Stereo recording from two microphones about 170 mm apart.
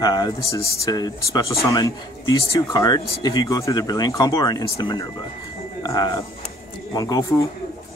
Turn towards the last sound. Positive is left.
turn(degrees=20)  # may be behind; listen again after turning